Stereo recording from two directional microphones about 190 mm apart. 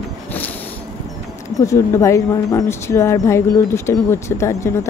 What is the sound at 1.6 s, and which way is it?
Speech, 15° left (ahead or behind).